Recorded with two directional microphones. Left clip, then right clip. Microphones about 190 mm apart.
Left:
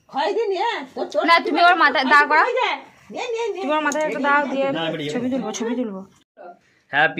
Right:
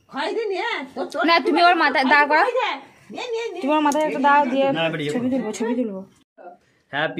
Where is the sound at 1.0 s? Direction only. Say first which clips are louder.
Left 2 dB; 30° right (ahead or behind).